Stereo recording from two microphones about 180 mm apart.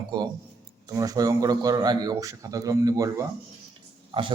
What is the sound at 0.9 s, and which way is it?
A man's voice, 20° right (ahead or behind).